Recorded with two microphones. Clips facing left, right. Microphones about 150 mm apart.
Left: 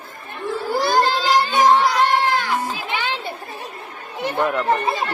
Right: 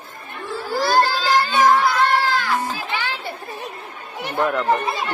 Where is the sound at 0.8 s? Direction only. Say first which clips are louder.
Right 1 dB; 20° left (ahead or behind).